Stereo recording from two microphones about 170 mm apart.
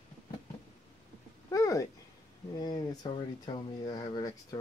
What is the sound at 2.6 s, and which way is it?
Speech, 25° left (ahead or behind).